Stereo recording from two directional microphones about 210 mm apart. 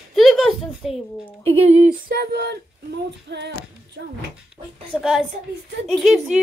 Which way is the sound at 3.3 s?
55° right (ahead or behind).